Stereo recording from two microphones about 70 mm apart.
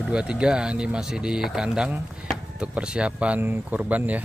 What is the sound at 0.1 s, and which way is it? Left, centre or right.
Speech, centre.